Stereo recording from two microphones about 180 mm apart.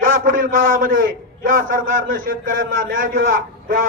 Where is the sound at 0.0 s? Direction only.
50° right (ahead or behind).